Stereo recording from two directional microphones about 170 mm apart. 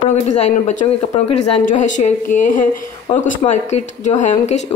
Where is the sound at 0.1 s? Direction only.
40° left (ahead or behind).